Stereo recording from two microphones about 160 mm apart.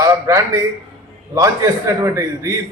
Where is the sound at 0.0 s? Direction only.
20° right (ahead or behind).